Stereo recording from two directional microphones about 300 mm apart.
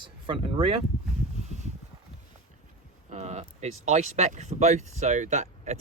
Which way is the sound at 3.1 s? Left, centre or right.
Right.